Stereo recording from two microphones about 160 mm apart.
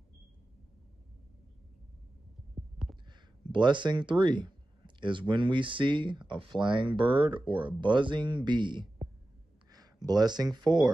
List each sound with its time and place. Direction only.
3.1 s speech: 30° right (ahead or behind)
10.0 s speech: 25° right (ahead or behind)